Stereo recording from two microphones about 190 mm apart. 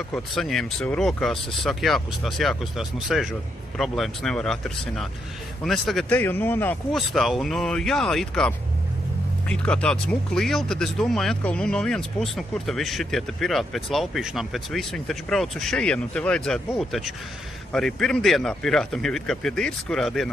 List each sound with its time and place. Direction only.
0.1 s speech: centre (ahead or behind)
7.0 s speech: centre (ahead or behind)